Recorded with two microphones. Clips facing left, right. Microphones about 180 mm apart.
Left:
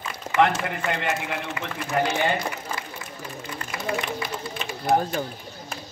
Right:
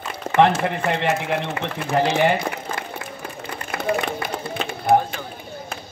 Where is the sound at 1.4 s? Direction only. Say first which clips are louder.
Right 5 dB; 60° right (ahead or behind).